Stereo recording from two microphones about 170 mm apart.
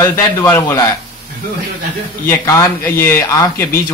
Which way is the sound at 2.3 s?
15° left (ahead or behind).